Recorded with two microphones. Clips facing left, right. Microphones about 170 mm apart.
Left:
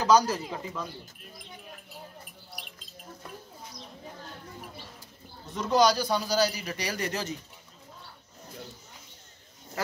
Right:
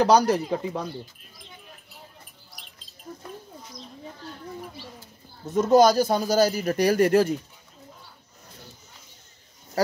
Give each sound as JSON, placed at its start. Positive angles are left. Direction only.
{"t": 0.0, "sound": "speech", "side_deg": -65}
{"t": 5.5, "sound": "a man's voice", "side_deg": -50}